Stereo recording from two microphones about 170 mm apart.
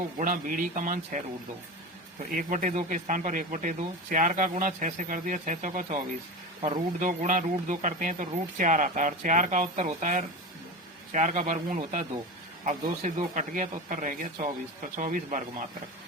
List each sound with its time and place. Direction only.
0.2 s speech: 50° right (ahead or behind)
2.3 s speech: 50° right (ahead or behind)
6.6 s speech: 30° right (ahead or behind)
7.0 s speech: 50° right (ahead or behind)